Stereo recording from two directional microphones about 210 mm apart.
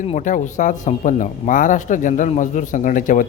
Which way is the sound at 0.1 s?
35° left (ahead or behind).